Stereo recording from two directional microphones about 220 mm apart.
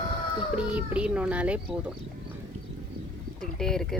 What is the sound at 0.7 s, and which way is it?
Speech, 5° right (ahead or behind).